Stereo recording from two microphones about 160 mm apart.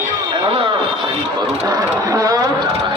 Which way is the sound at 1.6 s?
25° right (ahead or behind).